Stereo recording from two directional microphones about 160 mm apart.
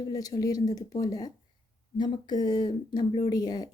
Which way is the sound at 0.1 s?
25° left (ahead or behind).